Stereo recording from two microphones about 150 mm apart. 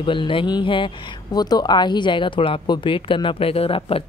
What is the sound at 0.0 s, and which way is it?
Speech, 35° left (ahead or behind).